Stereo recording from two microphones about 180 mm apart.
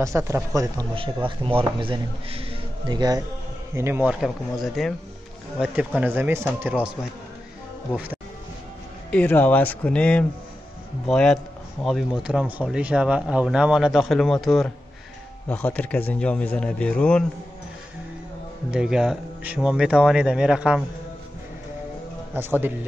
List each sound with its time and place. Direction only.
0.0 s a man's voice: 15° right (ahead or behind)
7.9 s speech: 10° right (ahead or behind)
9.1 s speech: 10° left (ahead or behind)
18.7 s speech: 5° right (ahead or behind)
22.3 s speech: 10° right (ahead or behind)